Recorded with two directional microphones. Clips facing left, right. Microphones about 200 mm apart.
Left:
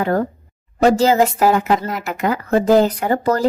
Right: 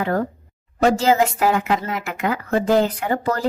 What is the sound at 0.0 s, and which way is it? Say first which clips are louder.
Speech: left 3 dB; 40° left (ahead or behind).